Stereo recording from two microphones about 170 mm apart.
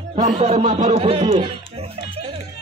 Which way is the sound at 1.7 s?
35° right (ahead or behind).